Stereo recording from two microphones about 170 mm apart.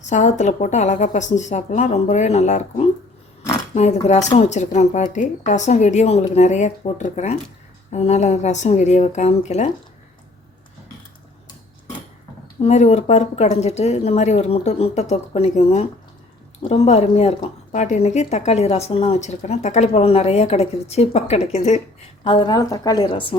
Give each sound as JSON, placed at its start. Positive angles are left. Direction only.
{"t": 0.1, "sound": "speech", "side_deg": 45}
{"t": 12.6, "sound": "speech", "side_deg": 45}
{"t": 22.2, "sound": "a woman's voice", "side_deg": 25}